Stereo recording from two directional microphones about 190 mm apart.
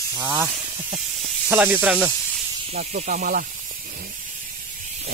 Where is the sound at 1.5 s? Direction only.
10° right (ahead or behind).